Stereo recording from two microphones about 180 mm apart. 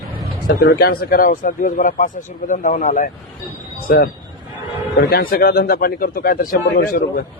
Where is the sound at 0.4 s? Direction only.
60° left (ahead or behind).